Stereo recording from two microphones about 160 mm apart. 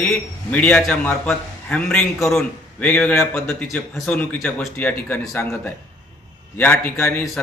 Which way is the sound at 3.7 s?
5° left (ahead or behind).